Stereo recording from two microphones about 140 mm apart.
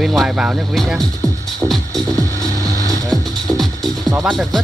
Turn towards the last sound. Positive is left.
turn(degrees=0)  # may be behind; listen again after turning